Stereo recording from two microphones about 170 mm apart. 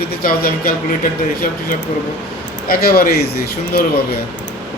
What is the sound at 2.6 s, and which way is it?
Speech, 65° left (ahead or behind).